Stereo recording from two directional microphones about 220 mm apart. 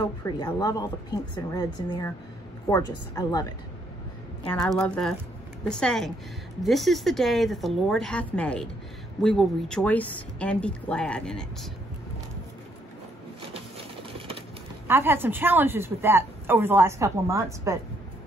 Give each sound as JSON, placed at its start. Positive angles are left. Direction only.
{"t": 0.0, "sound": "speech", "side_deg": 15}
{"t": 4.5, "sound": "speech", "side_deg": 5}
{"t": 14.1, "sound": "a sound", "side_deg": -25}
{"t": 14.9, "sound": "speech", "side_deg": -10}